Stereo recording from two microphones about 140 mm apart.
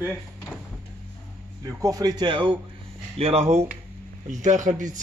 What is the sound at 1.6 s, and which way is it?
Speech, 25° right (ahead or behind).